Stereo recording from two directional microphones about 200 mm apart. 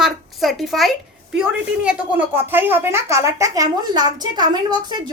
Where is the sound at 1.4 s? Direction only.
5° right (ahead or behind).